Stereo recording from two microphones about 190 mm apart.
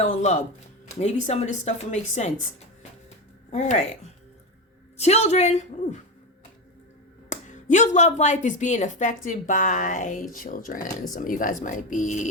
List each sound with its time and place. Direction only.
0.0 s a woman's voice: 35° left (ahead or behind)
3.5 s a woman's voice: 35° left (ahead or behind)
4.9 s a woman's voice: 35° left (ahead or behind)
7.3 s a woman's voice: 40° left (ahead or behind)